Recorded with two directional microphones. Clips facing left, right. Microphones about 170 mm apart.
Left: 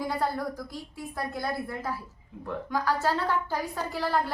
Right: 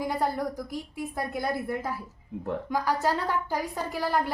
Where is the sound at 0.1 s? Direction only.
20° right (ahead or behind).